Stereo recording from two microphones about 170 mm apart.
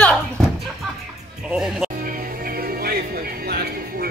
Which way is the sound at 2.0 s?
55° right (ahead or behind).